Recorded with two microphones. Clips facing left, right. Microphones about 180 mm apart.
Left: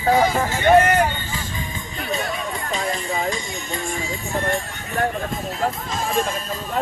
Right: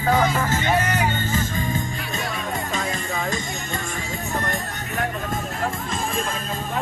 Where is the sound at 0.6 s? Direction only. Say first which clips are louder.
Left 12 dB; 55° left (ahead or behind).